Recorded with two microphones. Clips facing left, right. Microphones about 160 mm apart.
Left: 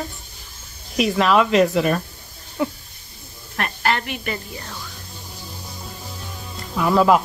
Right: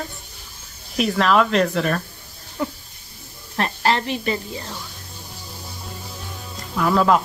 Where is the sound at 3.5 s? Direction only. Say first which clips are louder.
Right 2 dB; 30° right (ahead or behind).